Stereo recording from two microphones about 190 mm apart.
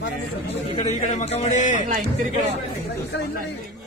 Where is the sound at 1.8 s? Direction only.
45° right (ahead or behind).